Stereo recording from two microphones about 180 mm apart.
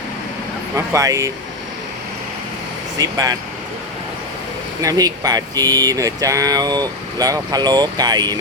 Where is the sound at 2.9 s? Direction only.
20° right (ahead or behind).